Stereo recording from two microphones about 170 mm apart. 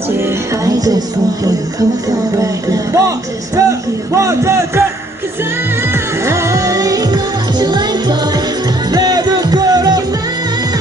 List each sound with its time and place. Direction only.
0.2 s music: 20° right (ahead or behind)
4.1 s speech: 15° right (ahead or behind)
6.2 s music: 15° right (ahead or behind)